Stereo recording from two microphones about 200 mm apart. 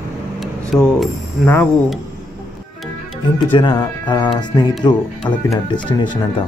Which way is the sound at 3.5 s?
20° left (ahead or behind).